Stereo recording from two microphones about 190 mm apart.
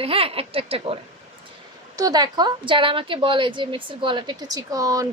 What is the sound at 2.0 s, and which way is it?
A woman's voice, 20° right (ahead or behind).